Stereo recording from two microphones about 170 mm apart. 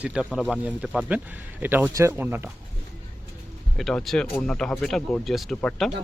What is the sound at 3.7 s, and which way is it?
Speech, centre (ahead or behind).